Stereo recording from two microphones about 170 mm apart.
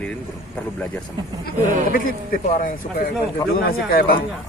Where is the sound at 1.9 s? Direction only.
55° left (ahead or behind).